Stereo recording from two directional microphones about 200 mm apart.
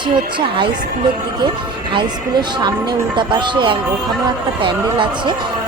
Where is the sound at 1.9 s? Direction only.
20° right (ahead or behind).